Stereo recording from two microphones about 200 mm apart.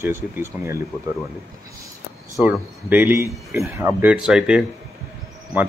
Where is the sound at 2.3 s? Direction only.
5° right (ahead or behind).